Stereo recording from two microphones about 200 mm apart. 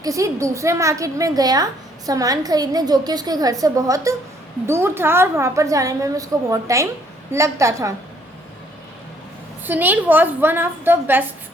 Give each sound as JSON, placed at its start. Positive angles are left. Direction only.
{"t": 0.0, "sound": "a woman's voice", "side_deg": -15}
{"t": 9.6, "sound": "a woman's voice", "side_deg": -10}